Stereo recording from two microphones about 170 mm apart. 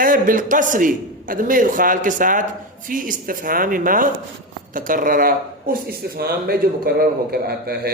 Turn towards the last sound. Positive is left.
turn(degrees=-65)  # may be behind; listen again after turning